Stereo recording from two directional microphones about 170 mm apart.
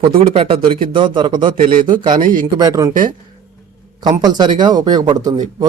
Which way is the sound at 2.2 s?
55° right (ahead or behind).